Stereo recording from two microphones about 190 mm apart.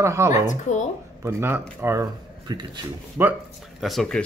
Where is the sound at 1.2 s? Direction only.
15° right (ahead or behind).